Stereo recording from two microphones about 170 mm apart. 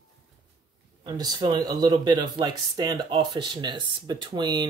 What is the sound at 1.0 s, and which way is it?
Speech, 25° right (ahead or behind).